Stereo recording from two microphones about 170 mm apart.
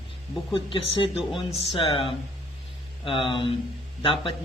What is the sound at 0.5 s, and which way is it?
Speech, 30° left (ahead or behind).